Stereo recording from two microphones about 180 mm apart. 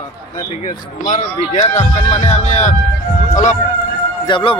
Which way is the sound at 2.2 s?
40° left (ahead or behind).